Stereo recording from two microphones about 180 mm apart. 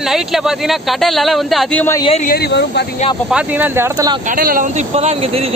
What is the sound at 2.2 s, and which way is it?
Speech, 60° left (ahead or behind).